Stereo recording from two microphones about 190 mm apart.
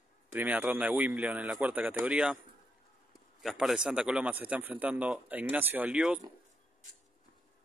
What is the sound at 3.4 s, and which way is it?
A man's voice, centre (ahead or behind).